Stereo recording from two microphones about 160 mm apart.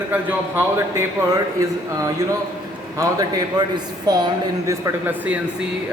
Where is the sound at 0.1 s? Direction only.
10° right (ahead or behind).